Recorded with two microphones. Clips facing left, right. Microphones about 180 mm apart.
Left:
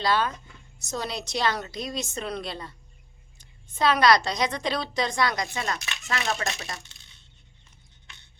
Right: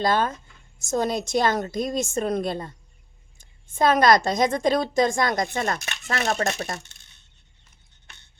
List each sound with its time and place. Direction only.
0.0 s a woman's voice: 45° right (ahead or behind)